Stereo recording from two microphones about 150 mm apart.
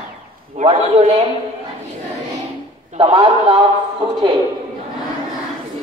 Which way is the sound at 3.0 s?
35° right (ahead or behind).